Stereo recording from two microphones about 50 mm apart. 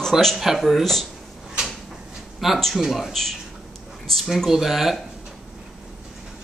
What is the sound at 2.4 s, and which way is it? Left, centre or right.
Speech, centre.